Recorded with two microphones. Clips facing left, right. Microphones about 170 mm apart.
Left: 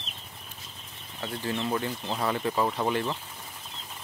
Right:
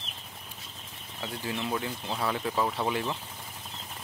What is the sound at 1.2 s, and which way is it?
Speech, 10° right (ahead or behind).